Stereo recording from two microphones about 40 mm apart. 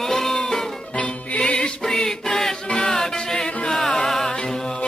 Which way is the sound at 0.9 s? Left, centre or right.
Left.